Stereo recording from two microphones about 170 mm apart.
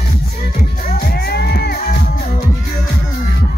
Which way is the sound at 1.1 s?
65° left (ahead or behind).